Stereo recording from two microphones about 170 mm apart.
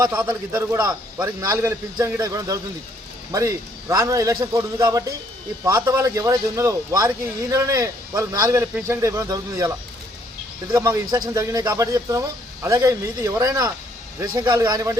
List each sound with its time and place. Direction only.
0.2 s a man's voice: 15° right (ahead or behind)
10.7 s a man's voice: 20° right (ahead or behind)